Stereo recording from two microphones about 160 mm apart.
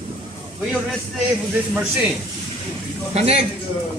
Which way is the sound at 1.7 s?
10° right (ahead or behind).